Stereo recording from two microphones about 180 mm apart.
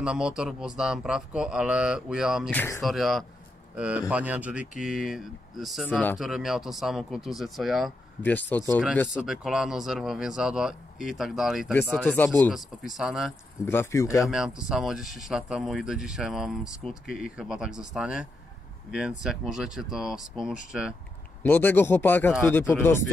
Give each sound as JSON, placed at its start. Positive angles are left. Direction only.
{"t": 0.0, "sound": "a man's voice", "side_deg": -5}
{"t": 2.5, "sound": "a man's voice", "side_deg": 10}
{"t": 2.8, "sound": "speech", "side_deg": 0}
{"t": 5.9, "sound": "a man's voice", "side_deg": 10}
{"t": 6.1, "sound": "speech", "side_deg": 0}
{"t": 8.2, "sound": "a man's voice", "side_deg": 10}
{"t": 9.1, "sound": "speech", "side_deg": -5}
{"t": 13.7, "sound": "a man's voice", "side_deg": 15}
{"t": 14.3, "sound": "speech", "side_deg": -5}
{"t": 21.4, "sound": "a man's voice", "side_deg": 10}